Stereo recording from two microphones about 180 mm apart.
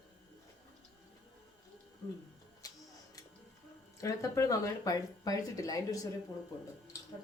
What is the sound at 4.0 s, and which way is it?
Speech, 15° left (ahead or behind).